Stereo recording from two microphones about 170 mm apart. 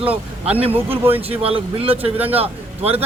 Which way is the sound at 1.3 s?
35° right (ahead or behind).